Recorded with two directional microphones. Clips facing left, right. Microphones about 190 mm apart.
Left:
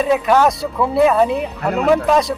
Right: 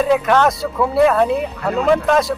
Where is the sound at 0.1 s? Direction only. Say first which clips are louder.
Left 3 dB; 5° left (ahead or behind).